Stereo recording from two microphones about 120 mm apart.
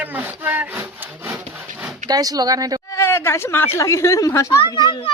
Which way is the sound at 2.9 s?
20° left (ahead or behind).